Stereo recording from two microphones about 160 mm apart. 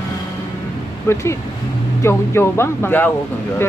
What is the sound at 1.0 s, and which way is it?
Speech, 15° left (ahead or behind).